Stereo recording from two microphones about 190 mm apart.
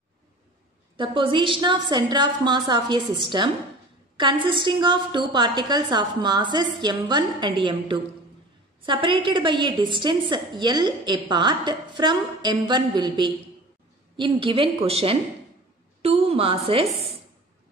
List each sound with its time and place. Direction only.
0.9 s a woman's voice: 25° right (ahead or behind)